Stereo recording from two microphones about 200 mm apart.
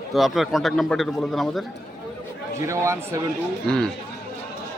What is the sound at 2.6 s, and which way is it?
Speech, 15° right (ahead or behind).